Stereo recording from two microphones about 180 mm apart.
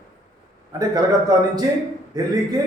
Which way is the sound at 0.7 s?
20° right (ahead or behind).